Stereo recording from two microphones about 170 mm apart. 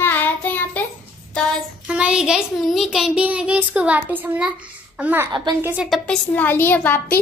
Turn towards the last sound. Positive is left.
turn(degrees=10)  # may be behind; listen again after turning